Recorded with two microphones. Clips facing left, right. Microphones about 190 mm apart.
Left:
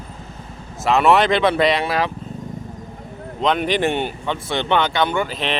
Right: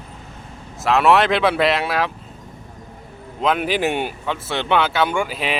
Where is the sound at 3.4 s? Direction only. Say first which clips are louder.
Left 1 dB; 5° right (ahead or behind).